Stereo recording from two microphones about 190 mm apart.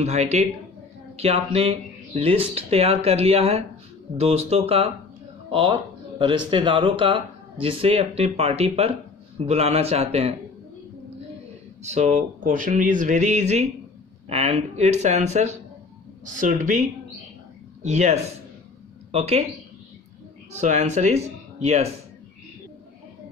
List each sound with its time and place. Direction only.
0.0 s speech: 35° right (ahead or behind)
11.8 s speech: 40° right (ahead or behind)
17.8 s speech: 35° right (ahead or behind)
20.5 s speech: 40° right (ahead or behind)